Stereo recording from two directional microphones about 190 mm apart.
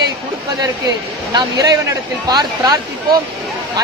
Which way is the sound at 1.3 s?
20° right (ahead or behind).